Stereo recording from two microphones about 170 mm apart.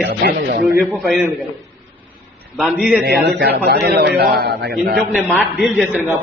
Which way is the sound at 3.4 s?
65° right (ahead or behind).